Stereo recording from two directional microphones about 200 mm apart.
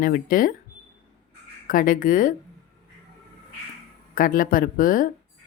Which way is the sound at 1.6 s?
45° left (ahead or behind).